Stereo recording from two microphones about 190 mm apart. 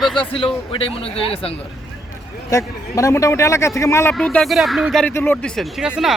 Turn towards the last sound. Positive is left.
turn(degrees=-5)  # may be behind; listen again after turning